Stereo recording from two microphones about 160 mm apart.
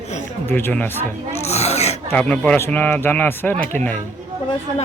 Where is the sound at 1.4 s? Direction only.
40° left (ahead or behind).